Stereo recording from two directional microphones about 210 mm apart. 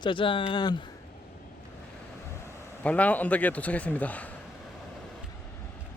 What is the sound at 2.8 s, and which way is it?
A man's voice, 5° left (ahead or behind).